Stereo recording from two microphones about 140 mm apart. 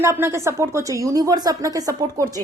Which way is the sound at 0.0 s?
20° right (ahead or behind).